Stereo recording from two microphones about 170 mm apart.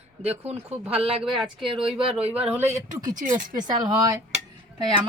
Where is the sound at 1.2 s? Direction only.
Centre (ahead or behind).